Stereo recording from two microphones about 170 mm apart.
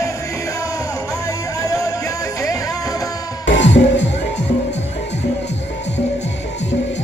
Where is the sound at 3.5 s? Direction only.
90° left.